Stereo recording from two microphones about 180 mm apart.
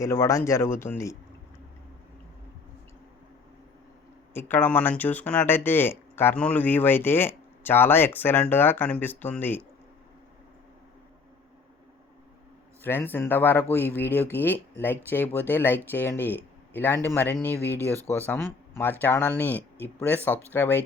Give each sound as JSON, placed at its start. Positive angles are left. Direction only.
{"t": 0.0, "sound": "speech", "side_deg": 15}
{"t": 4.4, "sound": "speech", "side_deg": 10}
{"t": 12.8, "sound": "speech", "side_deg": 10}